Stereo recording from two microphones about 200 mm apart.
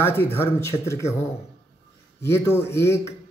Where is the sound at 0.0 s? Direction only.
10° left (ahead or behind).